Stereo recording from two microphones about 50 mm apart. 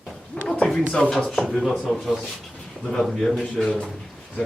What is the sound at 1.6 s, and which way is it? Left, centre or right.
Speech, centre.